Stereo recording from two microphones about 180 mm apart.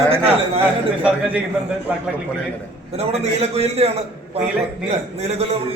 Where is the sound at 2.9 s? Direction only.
35° right (ahead or behind).